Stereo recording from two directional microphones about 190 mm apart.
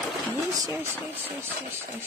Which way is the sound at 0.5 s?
20° right (ahead or behind).